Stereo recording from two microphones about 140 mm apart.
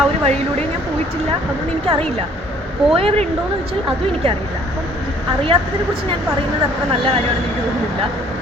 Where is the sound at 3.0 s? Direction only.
45° right (ahead or behind).